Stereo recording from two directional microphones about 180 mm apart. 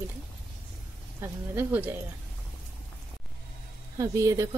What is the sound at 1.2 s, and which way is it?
Speech, 10° right (ahead or behind).